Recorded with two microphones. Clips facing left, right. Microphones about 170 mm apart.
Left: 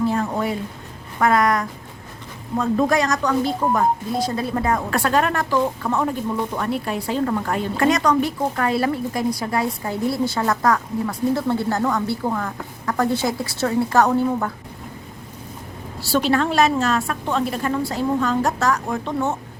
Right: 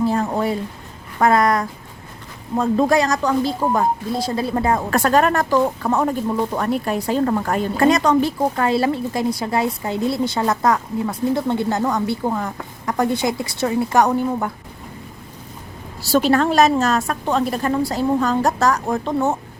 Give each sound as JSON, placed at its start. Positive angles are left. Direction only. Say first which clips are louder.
{"t": 0.1, "sound": "music", "louder": "right 2 dB", "side_deg": -35}
{"t": 1.2, "sound": "a woman's voice", "louder": "right 2 dB", "side_deg": -35}
{"t": 4.9, "sound": "speech", "louder": "right 3 dB", "side_deg": -45}
{"t": 16.3, "sound": "a woman's voice", "louder": "right 2 dB", "side_deg": -40}